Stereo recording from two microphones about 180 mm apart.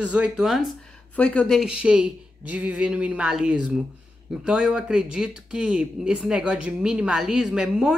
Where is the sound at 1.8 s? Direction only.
5° right (ahead or behind).